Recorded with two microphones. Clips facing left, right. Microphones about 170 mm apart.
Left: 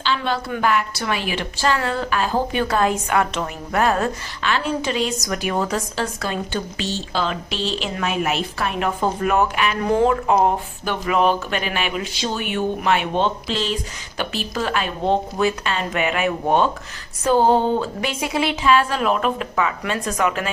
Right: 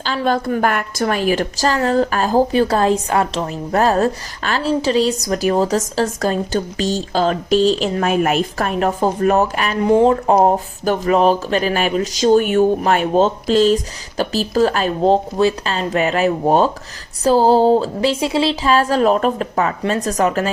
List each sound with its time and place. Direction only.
0.0 s a woman's voice: 45° right (ahead or behind)
9.8 s speech: 20° right (ahead or behind)
10.1 s a woman's voice: 35° right (ahead or behind)